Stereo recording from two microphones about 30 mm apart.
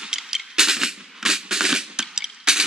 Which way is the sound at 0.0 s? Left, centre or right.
Centre.